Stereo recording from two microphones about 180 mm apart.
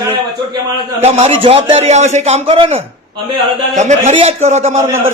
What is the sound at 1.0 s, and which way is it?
Speech, 35° right (ahead or behind).